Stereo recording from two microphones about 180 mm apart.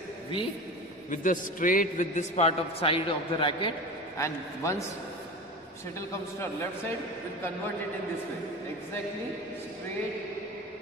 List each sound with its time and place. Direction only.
1.1 s a man's voice: 50° left (ahead or behind); by 3.7 s 30° left (ahead or behind)
4.2 s a man's voice: 15° left (ahead or behind)
5.9 s a man's voice: 15° left (ahead or behind)